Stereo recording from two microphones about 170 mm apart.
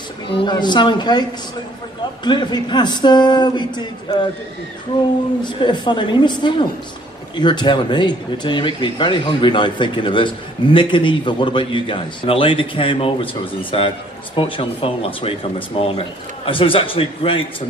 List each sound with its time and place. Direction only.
0.5 s speech: 25° left (ahead or behind)
2.2 s speech: 25° left (ahead or behind)
5.4 s a man's voice: 25° left (ahead or behind)